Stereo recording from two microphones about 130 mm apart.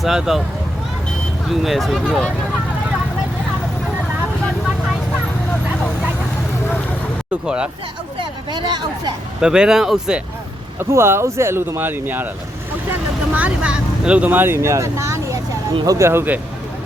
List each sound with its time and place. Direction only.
0.0 s speech: 5° right (ahead or behind)
1.5 s speech: centre (ahead or behind)
7.4 s speech: 5° right (ahead or behind)
8.2 s speech: 35° right (ahead or behind)
9.4 s speech: 5° right (ahead or behind)
10.8 s speech: 20° right (ahead or behind)
13.3 s speech: 10° right (ahead or behind)
15.7 s speech: 35° right (ahead or behind)
16.0 s speech: 20° right (ahead or behind)